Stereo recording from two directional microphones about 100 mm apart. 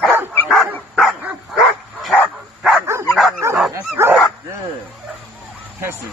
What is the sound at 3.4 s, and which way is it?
Dog, 30° right (ahead or behind).